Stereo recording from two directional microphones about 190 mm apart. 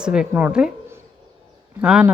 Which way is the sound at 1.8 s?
5° right (ahead or behind).